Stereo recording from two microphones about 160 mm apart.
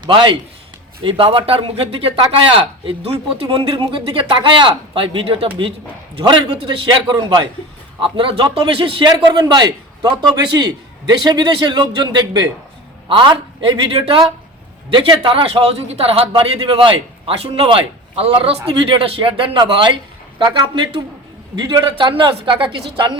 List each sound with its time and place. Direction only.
0.0 s a man's voice: 30° right (ahead or behind)